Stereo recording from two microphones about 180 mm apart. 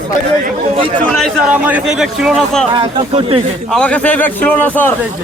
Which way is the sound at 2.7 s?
25° right (ahead or behind).